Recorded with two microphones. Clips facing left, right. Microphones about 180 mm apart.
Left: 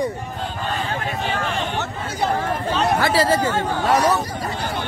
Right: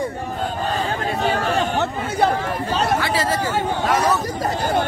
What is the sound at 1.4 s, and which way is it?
Chatter, 45° right (ahead or behind).